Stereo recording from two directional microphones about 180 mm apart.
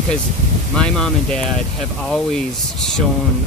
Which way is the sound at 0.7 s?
5° left (ahead or behind).